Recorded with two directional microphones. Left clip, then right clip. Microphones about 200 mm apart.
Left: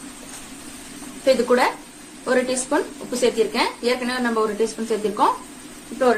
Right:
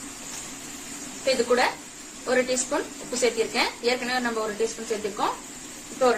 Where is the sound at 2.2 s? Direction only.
30° left (ahead or behind).